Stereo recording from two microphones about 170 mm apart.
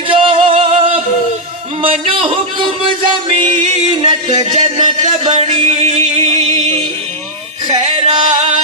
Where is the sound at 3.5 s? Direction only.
45° right (ahead or behind).